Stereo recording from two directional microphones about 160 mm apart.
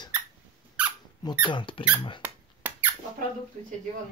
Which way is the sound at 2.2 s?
10° right (ahead or behind).